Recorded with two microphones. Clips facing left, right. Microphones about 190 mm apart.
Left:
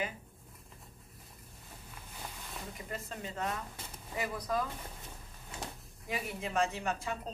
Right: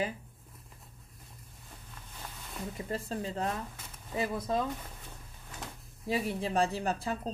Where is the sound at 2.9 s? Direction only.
35° right (ahead or behind).